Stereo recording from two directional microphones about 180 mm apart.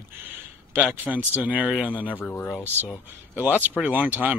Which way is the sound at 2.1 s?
10° left (ahead or behind).